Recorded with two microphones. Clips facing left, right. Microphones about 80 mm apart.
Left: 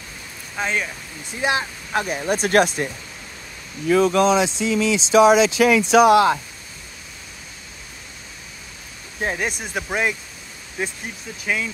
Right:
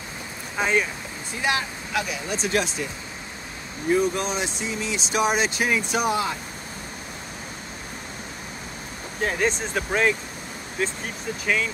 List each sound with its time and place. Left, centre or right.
0.6 s speech: centre
1.4 s speech: left
2.0 s speech: left
3.8 s speech: left
9.4 s speech: centre
11.4 s speech: centre